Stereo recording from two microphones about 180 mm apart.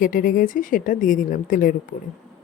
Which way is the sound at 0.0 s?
50° left (ahead or behind).